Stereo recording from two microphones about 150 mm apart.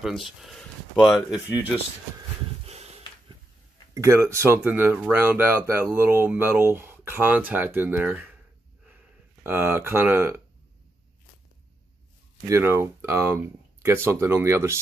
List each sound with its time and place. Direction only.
0.0 s speech: centre (ahead or behind)
2.6 s snort: 45° right (ahead or behind)
3.9 s speech: 20° right (ahead or behind)
8.8 s a sound: 10° right (ahead or behind)
12.4 s speech: 20° right (ahead or behind)